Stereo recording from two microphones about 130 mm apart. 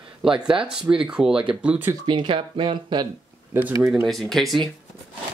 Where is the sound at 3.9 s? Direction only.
Centre (ahead or behind).